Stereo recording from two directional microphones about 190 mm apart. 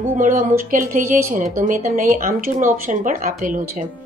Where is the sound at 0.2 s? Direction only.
45° right (ahead or behind).